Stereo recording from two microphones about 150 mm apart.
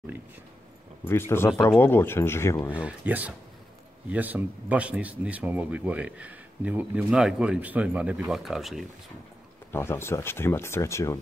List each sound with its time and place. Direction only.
1.0 s speech: 15° left (ahead or behind)
2.7 s speech: 10° right (ahead or behind)
9.7 s speech: 15° left (ahead or behind)